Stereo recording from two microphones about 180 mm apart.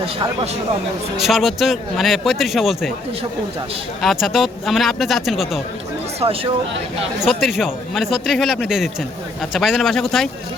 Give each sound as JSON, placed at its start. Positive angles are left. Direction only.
{"t": 0.0, "sound": "a man's voice", "side_deg": -30}
{"t": 1.1, "sound": "speech", "side_deg": 0}
{"t": 4.0, "sound": "speech", "side_deg": 0}
{"t": 6.1, "sound": "speech", "side_deg": -30}
{"t": 7.2, "sound": "speech", "side_deg": 0}